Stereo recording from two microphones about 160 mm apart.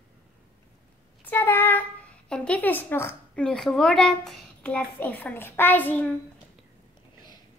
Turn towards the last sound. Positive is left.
turn(degrees=10)  # may be behind; listen again after turning